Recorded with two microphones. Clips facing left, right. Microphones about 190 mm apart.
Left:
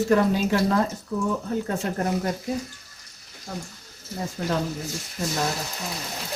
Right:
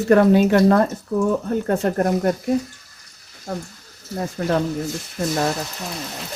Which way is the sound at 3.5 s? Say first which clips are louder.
Right 6 dB; 60° right (ahead or behind).